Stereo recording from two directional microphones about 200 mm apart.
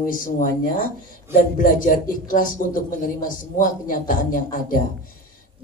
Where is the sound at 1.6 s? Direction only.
40° left (ahead or behind).